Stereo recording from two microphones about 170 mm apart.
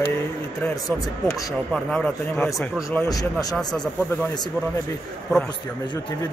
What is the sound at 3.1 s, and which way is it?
Speech, 20° left (ahead or behind).